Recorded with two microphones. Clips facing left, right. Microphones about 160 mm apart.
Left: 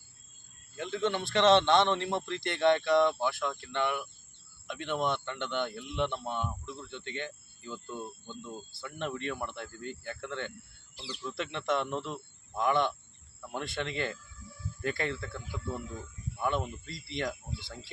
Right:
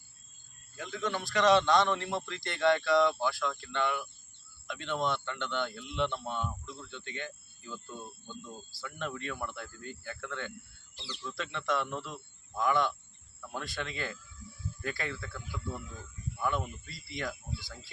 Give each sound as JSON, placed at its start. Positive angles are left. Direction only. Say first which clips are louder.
{"t": 0.8, "sound": "speech", "louder": "left 4 dB", "side_deg": 25}
{"t": 8.8, "sound": "speech", "louder": "left 2 dB", "side_deg": 20}
{"t": 10.9, "sound": "speech", "louder": "left 3 dB", "side_deg": 10}
{"t": 11.2, "sound": "speech", "louder": "left 2 dB", "side_deg": 20}
{"t": 16.4, "sound": "speech", "louder": "left 2 dB", "side_deg": 25}